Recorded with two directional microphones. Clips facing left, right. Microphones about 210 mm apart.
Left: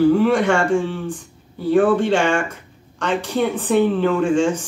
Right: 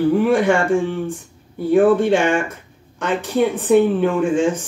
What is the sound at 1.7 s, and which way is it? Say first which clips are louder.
Speech: right 2 dB; 10° right (ahead or behind).